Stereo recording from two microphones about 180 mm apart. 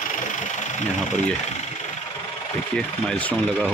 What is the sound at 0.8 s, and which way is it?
Speech, 40° left (ahead or behind).